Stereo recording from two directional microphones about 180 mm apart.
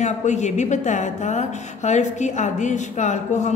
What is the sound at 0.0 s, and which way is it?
A woman's voice, 40° left (ahead or behind).